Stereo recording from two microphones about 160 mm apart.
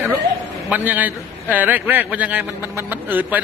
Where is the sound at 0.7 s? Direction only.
10° right (ahead or behind).